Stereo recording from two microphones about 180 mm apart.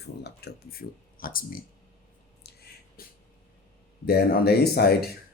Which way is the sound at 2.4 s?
60° left (ahead or behind).